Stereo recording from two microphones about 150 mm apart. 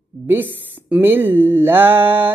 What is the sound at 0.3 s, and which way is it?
Speech, 10° right (ahead or behind).